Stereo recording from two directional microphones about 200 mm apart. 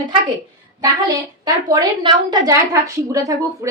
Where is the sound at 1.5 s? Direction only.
20° right (ahead or behind).